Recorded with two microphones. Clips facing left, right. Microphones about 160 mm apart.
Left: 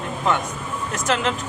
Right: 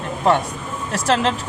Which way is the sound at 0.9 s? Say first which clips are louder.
Right 4 dB; 30° right (ahead or behind).